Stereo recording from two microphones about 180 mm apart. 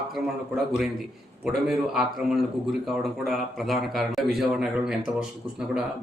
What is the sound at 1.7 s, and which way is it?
A man's voice, centre (ahead or behind).